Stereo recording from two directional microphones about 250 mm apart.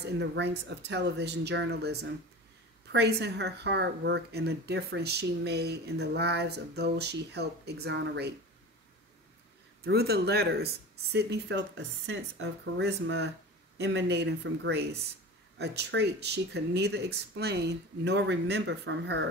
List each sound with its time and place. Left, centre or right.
0.0 s speech: right
9.8 s speech: right